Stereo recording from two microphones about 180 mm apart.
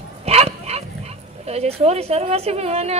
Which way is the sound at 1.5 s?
35° right (ahead or behind).